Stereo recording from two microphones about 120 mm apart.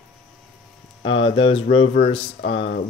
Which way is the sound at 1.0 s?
45° left (ahead or behind).